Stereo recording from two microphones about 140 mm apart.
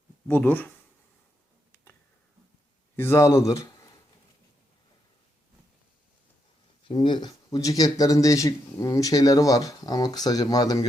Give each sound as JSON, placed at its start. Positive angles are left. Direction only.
{"t": 0.3, "sound": "speech", "side_deg": 10}
{"t": 2.9, "sound": "speech", "side_deg": 15}
{"t": 6.8, "sound": "speech", "side_deg": 35}